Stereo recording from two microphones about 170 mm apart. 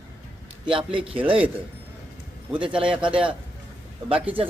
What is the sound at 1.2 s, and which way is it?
Speech, 10° right (ahead or behind).